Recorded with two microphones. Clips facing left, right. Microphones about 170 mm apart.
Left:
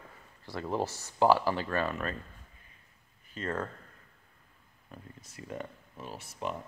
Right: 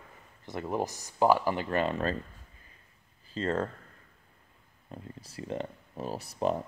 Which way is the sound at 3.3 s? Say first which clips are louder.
Right 5 dB; 25° right (ahead or behind).